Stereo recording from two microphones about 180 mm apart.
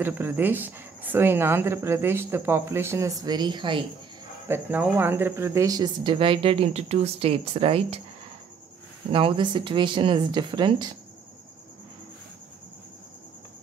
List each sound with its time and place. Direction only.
0.0 s speech: 10° right (ahead or behind)
4.5 s speech: 10° right (ahead or behind); by 8.0 s 30° right (ahead or behind)
9.1 s speech: 30° right (ahead or behind)